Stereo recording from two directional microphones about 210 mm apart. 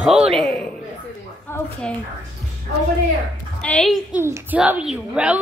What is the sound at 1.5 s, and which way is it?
Speech, 10° left (ahead or behind).